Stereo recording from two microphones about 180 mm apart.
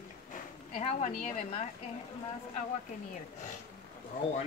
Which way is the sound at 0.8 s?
40° left (ahead or behind).